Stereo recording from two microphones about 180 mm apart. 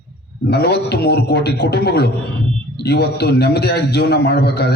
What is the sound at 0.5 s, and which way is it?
A man's voice, 65° left (ahead or behind).